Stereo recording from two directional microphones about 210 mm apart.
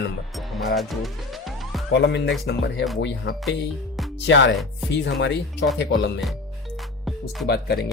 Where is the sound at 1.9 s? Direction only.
55° left (ahead or behind).